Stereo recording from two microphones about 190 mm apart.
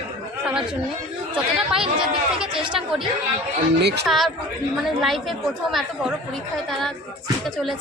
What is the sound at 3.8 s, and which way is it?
Speech, 60° right (ahead or behind).